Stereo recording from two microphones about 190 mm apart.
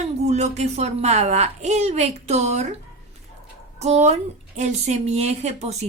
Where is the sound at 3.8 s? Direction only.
35° right (ahead or behind).